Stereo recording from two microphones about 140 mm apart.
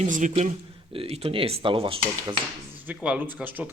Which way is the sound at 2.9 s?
10° right (ahead or behind).